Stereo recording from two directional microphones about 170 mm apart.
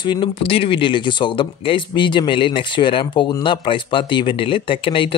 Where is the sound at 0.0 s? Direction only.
25° left (ahead or behind).